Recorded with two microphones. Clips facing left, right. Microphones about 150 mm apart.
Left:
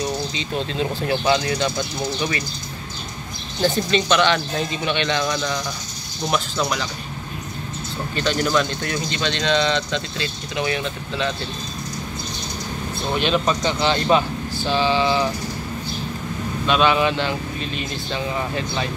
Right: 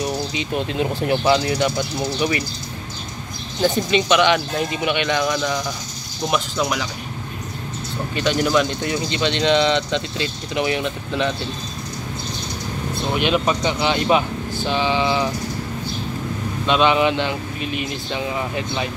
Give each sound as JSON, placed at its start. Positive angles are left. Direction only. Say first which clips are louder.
{"t": 0.3, "sound": "speech", "louder": "right 2 dB", "side_deg": -15}
{"t": 3.6, "sound": "speech", "louder": "right 1 dB", "side_deg": -15}
{"t": 8.2, "sound": "speech", "louder": "right 2 dB", "side_deg": -15}
{"t": 13.1, "sound": "speech", "louder": "right 1 dB", "side_deg": -15}
{"t": 16.6, "sound": "speech", "louder": "right 1 dB", "side_deg": -20}